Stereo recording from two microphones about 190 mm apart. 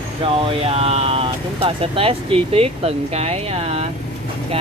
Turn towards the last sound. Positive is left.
turn(degrees=-30)  # may be behind; listen again after turning